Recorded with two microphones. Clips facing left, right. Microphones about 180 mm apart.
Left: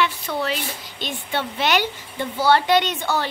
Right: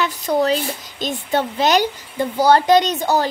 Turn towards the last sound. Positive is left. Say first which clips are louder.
# right 5 dB
turn(degrees=-40)  # may be behind; listen again after turning